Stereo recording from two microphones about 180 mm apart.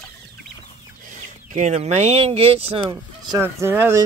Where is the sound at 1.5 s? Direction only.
40° right (ahead or behind).